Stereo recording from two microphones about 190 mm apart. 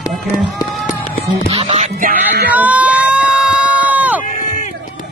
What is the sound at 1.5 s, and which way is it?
Music, 35° right (ahead or behind).